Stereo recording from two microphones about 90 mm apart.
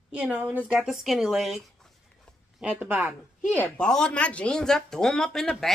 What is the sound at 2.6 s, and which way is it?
Speech, 20° right (ahead or behind).